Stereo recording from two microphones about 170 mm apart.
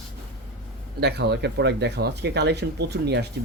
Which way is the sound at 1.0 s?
85° right.